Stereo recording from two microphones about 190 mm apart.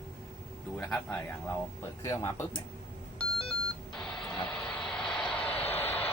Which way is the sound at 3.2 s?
30° left (ahead or behind).